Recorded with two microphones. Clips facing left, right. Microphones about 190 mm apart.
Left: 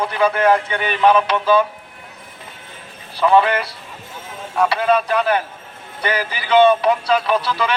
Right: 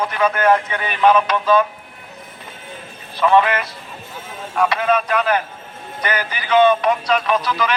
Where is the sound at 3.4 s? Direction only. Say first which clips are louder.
Left 1 dB; 35° left (ahead or behind).